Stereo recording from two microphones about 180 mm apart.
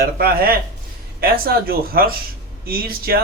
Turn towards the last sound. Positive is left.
turn(degrees=-55)  # may be behind; listen again after turning